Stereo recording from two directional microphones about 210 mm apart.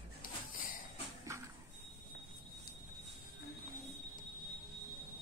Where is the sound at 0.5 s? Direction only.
40° left (ahead or behind).